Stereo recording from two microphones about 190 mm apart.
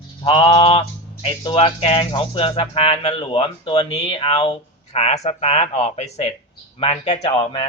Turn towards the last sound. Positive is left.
turn(degrees=30)  # may be behind; listen again after turning